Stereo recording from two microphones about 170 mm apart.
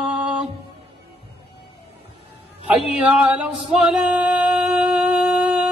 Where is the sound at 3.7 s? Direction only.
5° right (ahead or behind).